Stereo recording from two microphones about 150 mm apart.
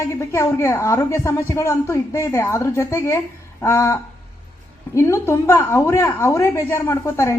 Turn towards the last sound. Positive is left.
turn(degrees=20)  # may be behind; listen again after turning